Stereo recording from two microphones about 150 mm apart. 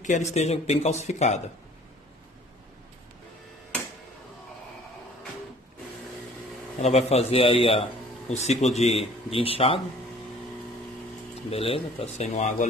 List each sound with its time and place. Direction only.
0.0 s speech: 50° left (ahead or behind)
6.8 s speech: 45° left (ahead or behind)
11.5 s speech: 40° left (ahead or behind)